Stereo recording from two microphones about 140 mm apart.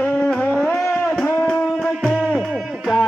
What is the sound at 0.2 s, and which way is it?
Music, 10° left (ahead or behind).